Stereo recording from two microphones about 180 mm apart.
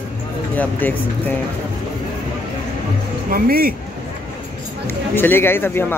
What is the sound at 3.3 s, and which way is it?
Speech, 55° right (ahead or behind).